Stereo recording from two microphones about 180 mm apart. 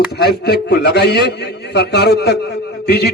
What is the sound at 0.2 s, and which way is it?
A man's voice, 65° left (ahead or behind).